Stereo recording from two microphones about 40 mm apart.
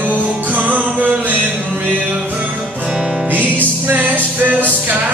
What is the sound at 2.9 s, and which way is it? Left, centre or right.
Music, centre.